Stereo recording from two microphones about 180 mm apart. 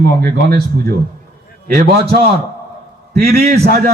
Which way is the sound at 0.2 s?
60° right (ahead or behind).